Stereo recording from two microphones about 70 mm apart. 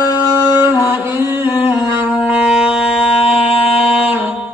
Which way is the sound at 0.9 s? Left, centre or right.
Right.